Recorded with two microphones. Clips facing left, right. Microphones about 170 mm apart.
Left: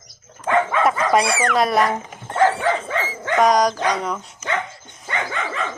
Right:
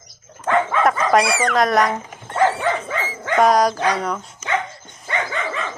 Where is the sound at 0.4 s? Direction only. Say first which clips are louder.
Even; centre (ahead or behind).